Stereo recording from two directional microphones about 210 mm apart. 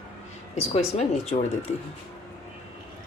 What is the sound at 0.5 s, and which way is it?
Speech, 30° left (ahead or behind).